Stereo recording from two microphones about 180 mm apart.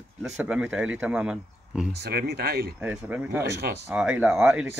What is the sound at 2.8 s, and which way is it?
Speech, 10° right (ahead or behind).